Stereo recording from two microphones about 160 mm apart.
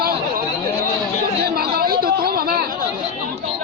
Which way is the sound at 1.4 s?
70° right (ahead or behind).